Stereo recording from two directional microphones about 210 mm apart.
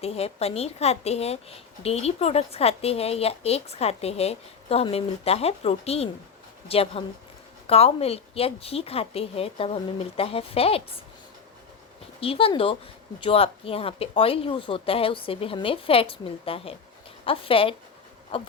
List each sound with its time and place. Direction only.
0.0 s speech: 30° left (ahead or behind)
12.2 s speech: 25° left (ahead or behind)